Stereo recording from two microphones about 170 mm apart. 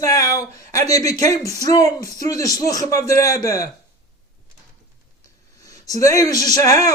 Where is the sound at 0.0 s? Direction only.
20° left (ahead or behind).